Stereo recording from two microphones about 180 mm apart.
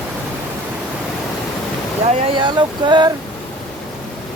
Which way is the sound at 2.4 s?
25° right (ahead or behind).